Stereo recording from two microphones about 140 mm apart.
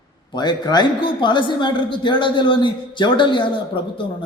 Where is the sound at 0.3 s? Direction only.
30° left (ahead or behind).